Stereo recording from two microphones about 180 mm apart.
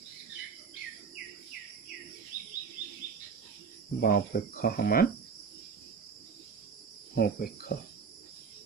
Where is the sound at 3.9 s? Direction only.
55° left (ahead or behind).